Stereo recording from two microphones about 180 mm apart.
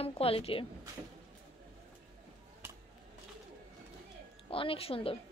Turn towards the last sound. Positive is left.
turn(degrees=30)  # may be behind; listen again after turning